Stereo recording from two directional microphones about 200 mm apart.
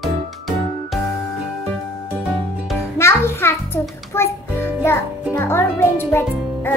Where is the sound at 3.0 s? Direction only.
10° left (ahead or behind).